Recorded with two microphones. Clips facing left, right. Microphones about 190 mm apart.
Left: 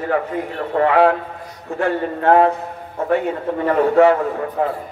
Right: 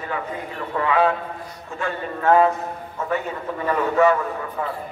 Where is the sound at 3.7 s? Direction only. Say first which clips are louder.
Left 5 dB; 60° left (ahead or behind).